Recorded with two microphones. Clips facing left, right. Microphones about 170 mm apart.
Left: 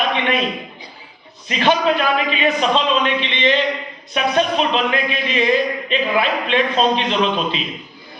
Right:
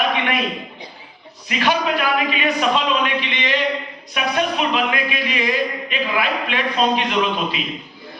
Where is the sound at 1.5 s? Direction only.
25° left (ahead or behind).